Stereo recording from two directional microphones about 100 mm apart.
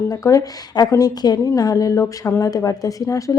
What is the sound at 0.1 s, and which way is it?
Speech, 35° left (ahead or behind).